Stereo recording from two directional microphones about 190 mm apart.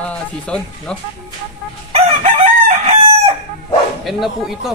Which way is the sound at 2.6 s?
35° right (ahead or behind).